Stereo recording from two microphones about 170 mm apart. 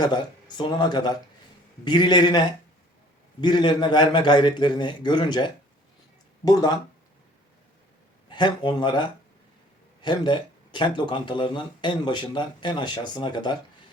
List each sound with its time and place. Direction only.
0.0 s speech: 25° left (ahead or behind)
8.3 s speech: 25° left (ahead or behind)